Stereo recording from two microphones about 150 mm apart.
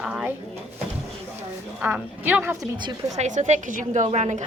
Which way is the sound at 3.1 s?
55° right (ahead or behind).